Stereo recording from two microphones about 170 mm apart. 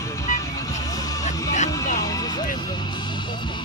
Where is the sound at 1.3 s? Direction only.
45° left (ahead or behind).